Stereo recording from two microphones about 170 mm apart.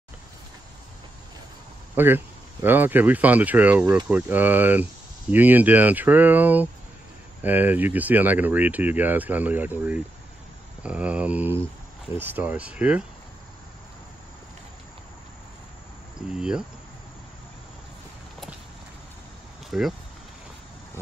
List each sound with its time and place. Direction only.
2.0 s speech: 10° right (ahead or behind)
16.3 s speech: 5° right (ahead or behind)
19.7 s speech: centre (ahead or behind)